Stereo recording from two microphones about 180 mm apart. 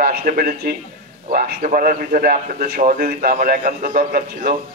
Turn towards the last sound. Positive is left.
turn(degrees=-50)  # may be behind; listen again after turning